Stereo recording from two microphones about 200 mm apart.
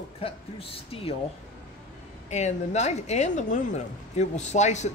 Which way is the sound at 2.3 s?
35° left (ahead or behind).